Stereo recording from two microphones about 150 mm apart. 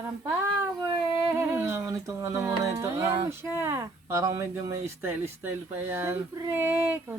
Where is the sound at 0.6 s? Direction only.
25° right (ahead or behind).